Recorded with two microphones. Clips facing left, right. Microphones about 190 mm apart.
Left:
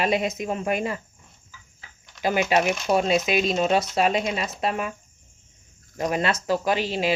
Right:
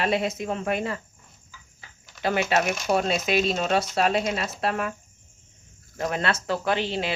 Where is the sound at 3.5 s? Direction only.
15° left (ahead or behind).